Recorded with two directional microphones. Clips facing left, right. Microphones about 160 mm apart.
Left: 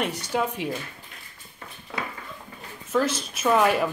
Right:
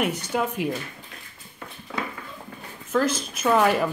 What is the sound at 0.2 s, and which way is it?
Speech, centre (ahead or behind).